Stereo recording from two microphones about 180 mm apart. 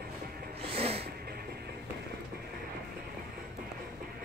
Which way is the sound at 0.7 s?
30° right (ahead or behind).